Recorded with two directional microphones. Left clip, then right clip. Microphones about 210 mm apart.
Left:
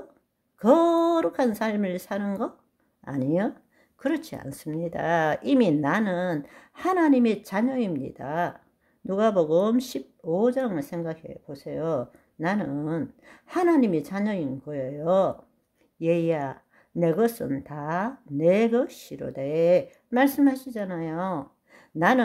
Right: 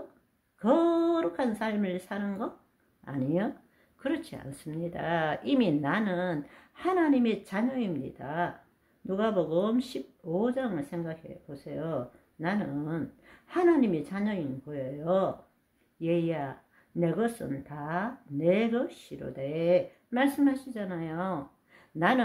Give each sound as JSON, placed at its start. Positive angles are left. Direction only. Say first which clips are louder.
{"t": 0.6, "sound": "speech", "louder": "left 6 dB", "side_deg": 45}